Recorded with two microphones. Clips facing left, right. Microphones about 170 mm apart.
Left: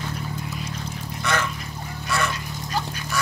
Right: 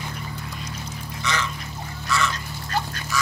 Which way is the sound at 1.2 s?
55° left (ahead or behind).